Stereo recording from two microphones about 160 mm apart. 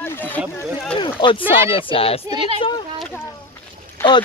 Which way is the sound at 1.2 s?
25° left (ahead or behind).